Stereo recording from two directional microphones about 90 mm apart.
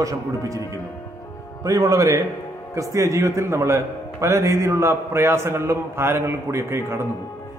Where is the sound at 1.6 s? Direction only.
35° right (ahead or behind).